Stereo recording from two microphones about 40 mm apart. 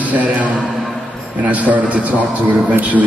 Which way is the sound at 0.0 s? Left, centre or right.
Right.